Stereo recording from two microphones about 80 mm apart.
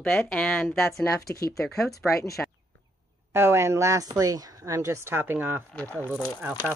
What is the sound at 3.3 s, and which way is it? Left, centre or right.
Speech, right.